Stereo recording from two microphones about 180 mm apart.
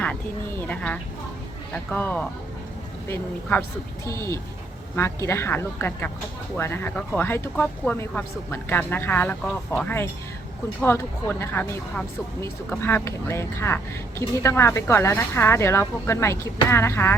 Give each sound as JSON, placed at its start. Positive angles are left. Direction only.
{"t": 0.0, "sound": "speech", "side_deg": 10}
{"t": 4.0, "sound": "speech", "side_deg": 15}